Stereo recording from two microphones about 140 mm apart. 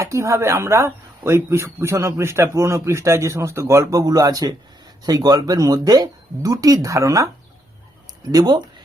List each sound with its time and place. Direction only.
0.0 s speech: 20° right (ahead or behind)
8.3 s speech: 30° right (ahead or behind)